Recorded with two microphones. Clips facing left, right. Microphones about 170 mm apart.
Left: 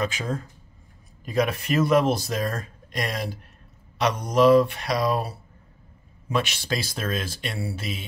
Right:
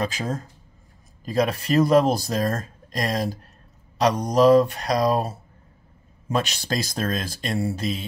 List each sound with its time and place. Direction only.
0.0 s speech: 35° right (ahead or behind)